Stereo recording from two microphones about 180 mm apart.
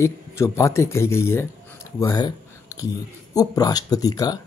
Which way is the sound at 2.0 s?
20° left (ahead or behind).